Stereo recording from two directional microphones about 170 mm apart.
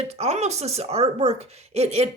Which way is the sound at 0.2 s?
40° right (ahead or behind).